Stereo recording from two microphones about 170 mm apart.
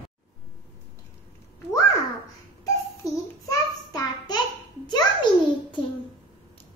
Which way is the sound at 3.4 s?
20° left (ahead or behind).